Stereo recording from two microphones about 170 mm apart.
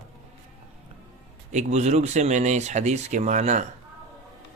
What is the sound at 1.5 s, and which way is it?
Speech, 40° right (ahead or behind).